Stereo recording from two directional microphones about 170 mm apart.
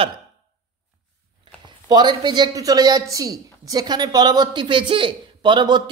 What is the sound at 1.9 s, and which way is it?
A woman's voice, 25° right (ahead or behind).